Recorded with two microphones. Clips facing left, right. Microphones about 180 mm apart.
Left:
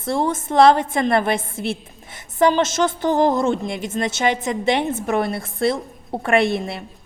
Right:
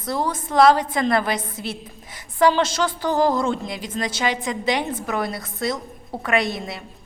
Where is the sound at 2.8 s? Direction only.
20° left (ahead or behind).